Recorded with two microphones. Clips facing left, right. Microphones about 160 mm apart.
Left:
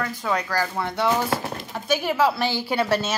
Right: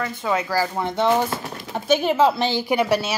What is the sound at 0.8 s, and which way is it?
A woman's voice, 20° right (ahead or behind).